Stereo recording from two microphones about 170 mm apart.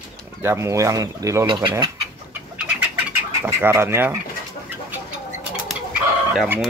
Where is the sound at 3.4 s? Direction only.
15° right (ahead or behind).